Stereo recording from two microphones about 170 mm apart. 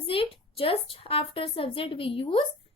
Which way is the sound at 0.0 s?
30° left (ahead or behind).